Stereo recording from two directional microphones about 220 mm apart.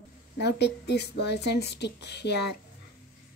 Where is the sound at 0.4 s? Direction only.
50° left (ahead or behind).